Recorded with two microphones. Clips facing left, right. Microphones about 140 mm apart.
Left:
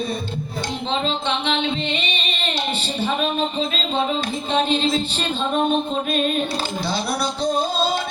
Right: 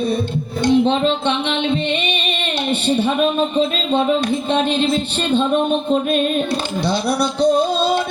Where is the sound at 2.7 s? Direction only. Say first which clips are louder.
Right 10 dB; 60° right (ahead or behind).